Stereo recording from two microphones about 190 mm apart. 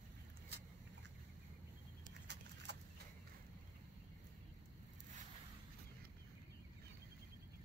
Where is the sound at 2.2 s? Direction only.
65° right (ahead or behind).